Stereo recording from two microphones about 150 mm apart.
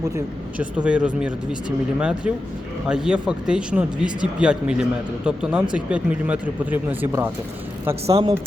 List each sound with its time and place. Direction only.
0.6 s speech: 10° right (ahead or behind)
8.1 s speech: 35° right (ahead or behind)